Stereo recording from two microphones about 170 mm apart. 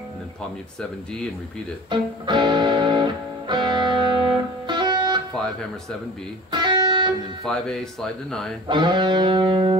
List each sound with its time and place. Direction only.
1.9 s music: 25° right (ahead or behind)
5.3 s speech: 5° left (ahead or behind)
6.5 s music: 25° right (ahead or behind)
7.4 s speech: centre (ahead or behind)
8.6 s music: 25° right (ahead or behind)